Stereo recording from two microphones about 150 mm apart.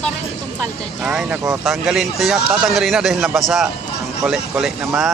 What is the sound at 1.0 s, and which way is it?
A man's voice, 5° right (ahead or behind).